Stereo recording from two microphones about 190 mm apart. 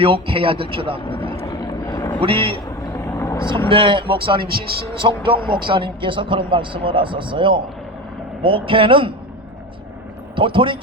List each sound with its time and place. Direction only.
0.0 s speech: 30° right (ahead or behind)
1.5 s vehicle: 20° left (ahead or behind)
2.2 s speech: 30° right (ahead or behind)
3.0 s vehicle: 15° left (ahead or behind)
3.7 s speech: 25° right (ahead or behind)
4.4 s speech: 55° right (ahead or behind)
4.9 s speech: 25° right (ahead or behind)
10.3 s speech: 25° right (ahead or behind)